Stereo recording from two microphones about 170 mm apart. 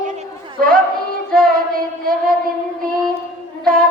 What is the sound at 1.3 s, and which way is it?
Child singing, 60° right (ahead or behind).